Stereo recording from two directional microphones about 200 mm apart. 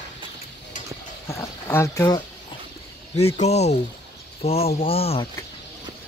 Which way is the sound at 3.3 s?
35° left (ahead or behind).